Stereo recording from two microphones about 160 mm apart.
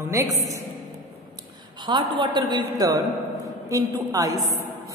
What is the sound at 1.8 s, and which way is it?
A man's voice, 30° right (ahead or behind).